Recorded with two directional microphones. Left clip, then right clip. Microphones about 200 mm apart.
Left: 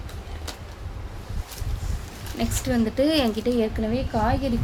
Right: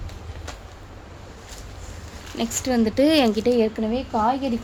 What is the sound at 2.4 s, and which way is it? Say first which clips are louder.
Speech: right 3 dB; 40° right (ahead or behind).